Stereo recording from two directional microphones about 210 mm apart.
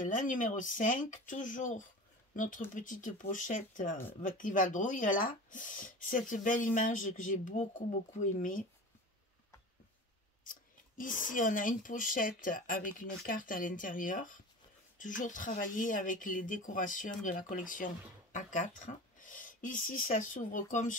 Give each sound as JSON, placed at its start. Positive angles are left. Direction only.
{"t": 0.0, "sound": "speech", "side_deg": 40}
{"t": 10.4, "sound": "speech", "side_deg": 40}